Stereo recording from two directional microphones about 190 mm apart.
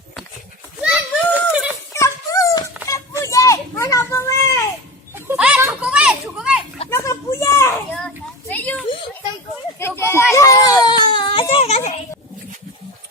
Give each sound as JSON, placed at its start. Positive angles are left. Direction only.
{"t": 0.8, "sound": "a sound", "side_deg": -5}
{"t": 1.9, "sound": "dog", "side_deg": 15}
{"t": 2.8, "sound": "children playing", "side_deg": 15}
{"t": 5.1, "sound": "children playing", "side_deg": -10}
{"t": 6.9, "sound": "a sound", "side_deg": 15}
{"t": 10.8, "sound": "baby cry", "side_deg": 25}